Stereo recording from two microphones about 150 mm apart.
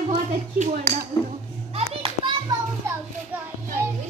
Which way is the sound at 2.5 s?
25° right (ahead or behind).